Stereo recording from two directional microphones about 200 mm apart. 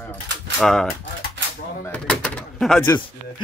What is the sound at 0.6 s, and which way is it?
Speech, centre (ahead or behind).